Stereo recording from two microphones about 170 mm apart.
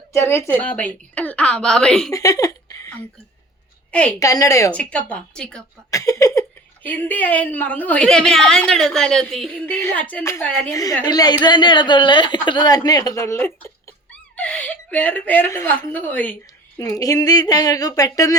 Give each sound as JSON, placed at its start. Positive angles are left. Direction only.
{"t": 0.1, "sound": "a woman's voice", "side_deg": 15}
{"t": 2.0, "sound": "a sound", "side_deg": 20}
{"t": 4.2, "sound": "a woman's voice", "side_deg": 20}
{"t": 4.7, "sound": "a woman's voice", "side_deg": 5}
{"t": 5.9, "sound": "a woman's voice", "side_deg": 20}